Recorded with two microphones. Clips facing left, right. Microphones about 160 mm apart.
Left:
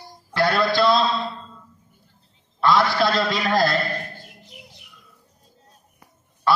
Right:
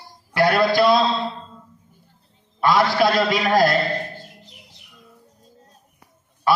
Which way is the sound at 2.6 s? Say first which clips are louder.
Right 1 dB; 15° right (ahead or behind).